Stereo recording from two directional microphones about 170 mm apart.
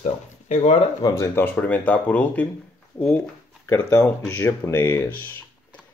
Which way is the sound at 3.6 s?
20° left (ahead or behind).